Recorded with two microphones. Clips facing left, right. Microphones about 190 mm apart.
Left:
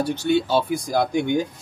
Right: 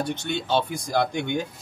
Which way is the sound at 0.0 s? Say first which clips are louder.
Left 8 dB; 5° left (ahead or behind).